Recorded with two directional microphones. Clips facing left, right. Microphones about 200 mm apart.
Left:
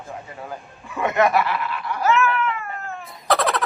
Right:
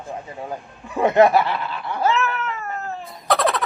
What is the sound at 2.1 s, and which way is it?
Cat, 40° right (ahead or behind).